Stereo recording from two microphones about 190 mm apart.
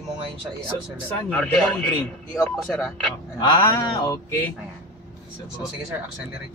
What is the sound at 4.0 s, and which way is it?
Speech, 20° left (ahead or behind).